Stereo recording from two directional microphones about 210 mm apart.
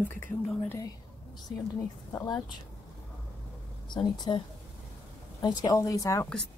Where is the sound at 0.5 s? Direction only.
10° left (ahead or behind).